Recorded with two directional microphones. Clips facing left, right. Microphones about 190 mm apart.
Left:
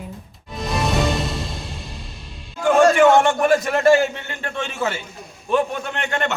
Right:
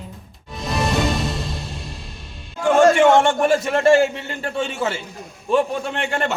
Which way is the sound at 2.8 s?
25° right (ahead or behind).